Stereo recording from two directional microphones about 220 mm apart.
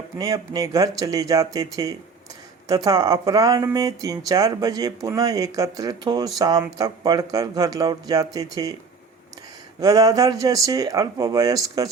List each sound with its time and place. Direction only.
0.2 s speech: 15° right (ahead or behind)
9.8 s speech: 15° right (ahead or behind)